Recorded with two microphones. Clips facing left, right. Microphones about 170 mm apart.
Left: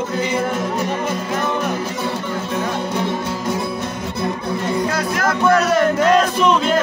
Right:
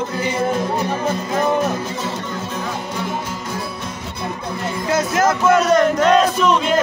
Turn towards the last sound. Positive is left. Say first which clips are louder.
# right 1 dB
turn(degrees=5)  # may be behind; listen again after turning